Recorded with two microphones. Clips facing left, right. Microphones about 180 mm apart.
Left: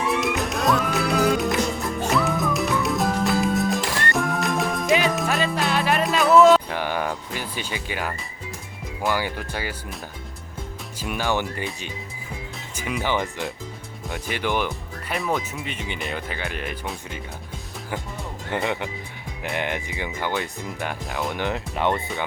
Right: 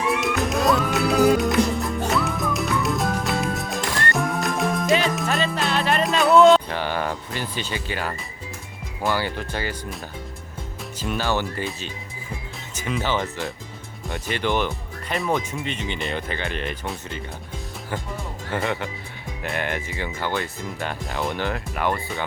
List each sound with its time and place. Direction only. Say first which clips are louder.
0.0 s music: right 1 dB; centre (ahead or behind)
9.1 s speech: right 1 dB; 10° left (ahead or behind)
10.9 s speech: right 1 dB; 10° left (ahead or behind)
18.5 s speech: even; 20° left (ahead or behind)
21.1 s speech: right 2 dB; centre (ahead or behind)
21.3 s speech: left 1 dB; 20° left (ahead or behind)